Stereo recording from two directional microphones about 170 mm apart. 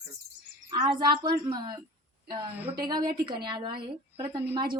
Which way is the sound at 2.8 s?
25° right (ahead or behind).